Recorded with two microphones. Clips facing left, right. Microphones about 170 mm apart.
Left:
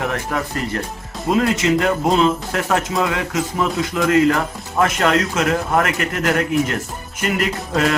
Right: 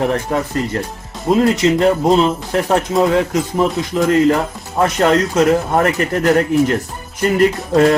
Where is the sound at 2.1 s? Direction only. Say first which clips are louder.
Right 2 dB; 30° right (ahead or behind).